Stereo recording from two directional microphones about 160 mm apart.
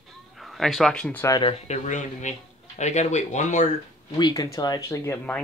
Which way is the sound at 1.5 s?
45° left (ahead or behind).